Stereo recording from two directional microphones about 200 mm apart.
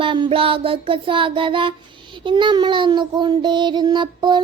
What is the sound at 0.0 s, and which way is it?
A woman's voice, 25° right (ahead or behind).